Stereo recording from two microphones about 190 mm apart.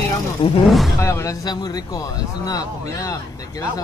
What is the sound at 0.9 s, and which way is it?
Speech, 15° left (ahead or behind).